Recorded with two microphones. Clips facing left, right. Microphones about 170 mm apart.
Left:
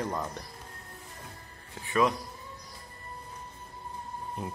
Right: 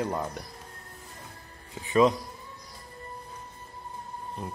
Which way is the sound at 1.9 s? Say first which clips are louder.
Right 5 dB; 20° right (ahead or behind).